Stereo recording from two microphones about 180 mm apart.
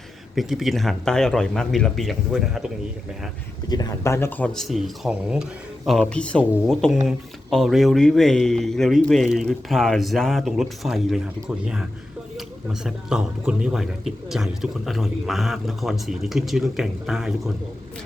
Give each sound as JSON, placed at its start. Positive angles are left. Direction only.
{"t": 0.3, "sound": "speech", "side_deg": 0}
{"t": 3.7, "sound": "speech", "side_deg": 20}